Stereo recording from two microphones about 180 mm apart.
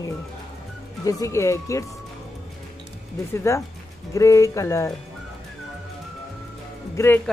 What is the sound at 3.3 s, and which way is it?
Speech, 15° left (ahead or behind).